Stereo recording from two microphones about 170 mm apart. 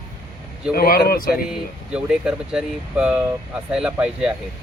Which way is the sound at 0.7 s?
60° left (ahead or behind).